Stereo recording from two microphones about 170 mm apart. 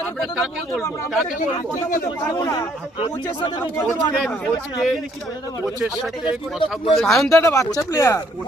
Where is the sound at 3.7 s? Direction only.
5° left (ahead or behind).